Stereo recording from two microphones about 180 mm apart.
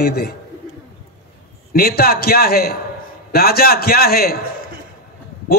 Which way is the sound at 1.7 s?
60° left (ahead or behind).